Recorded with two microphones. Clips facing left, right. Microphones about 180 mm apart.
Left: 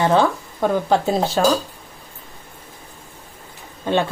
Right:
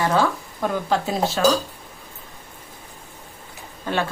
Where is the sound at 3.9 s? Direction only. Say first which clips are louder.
Left 5 dB; 25° left (ahead or behind).